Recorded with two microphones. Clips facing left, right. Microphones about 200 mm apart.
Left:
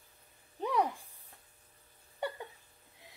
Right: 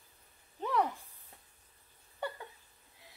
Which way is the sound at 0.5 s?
15° left (ahead or behind).